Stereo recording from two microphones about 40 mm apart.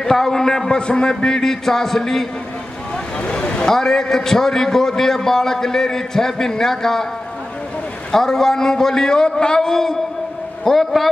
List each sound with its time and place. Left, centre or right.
0.0 s a man's voice: centre
3.3 s a sound: left
3.6 s a man's voice: centre
8.1 s a man's voice: centre